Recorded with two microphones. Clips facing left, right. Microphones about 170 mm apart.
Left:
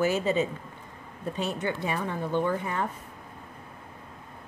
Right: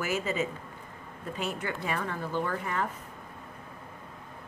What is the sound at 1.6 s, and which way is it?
Speech, 20° left (ahead or behind).